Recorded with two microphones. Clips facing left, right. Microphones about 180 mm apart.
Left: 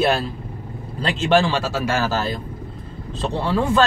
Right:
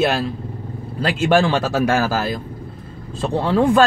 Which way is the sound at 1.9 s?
10° right (ahead or behind).